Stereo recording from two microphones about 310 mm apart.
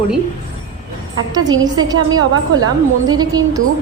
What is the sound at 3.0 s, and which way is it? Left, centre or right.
Speech, centre.